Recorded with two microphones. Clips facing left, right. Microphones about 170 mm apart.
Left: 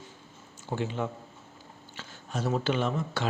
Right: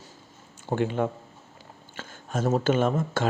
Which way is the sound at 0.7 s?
55° right (ahead or behind).